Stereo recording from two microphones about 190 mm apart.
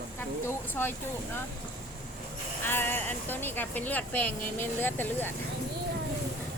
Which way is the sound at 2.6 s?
10° left (ahead or behind).